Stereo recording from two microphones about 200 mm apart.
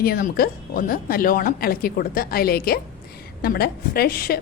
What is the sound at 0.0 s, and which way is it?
Speech, 50° left (ahead or behind).